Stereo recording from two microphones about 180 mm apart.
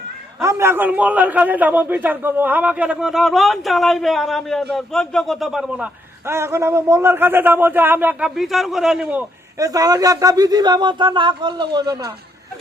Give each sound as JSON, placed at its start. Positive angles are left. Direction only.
{"t": 0.4, "sound": "a man's voice", "side_deg": -15}
{"t": 9.6, "sound": "speech", "side_deg": -20}